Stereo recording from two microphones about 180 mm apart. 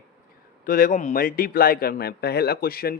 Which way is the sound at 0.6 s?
50° left (ahead or behind).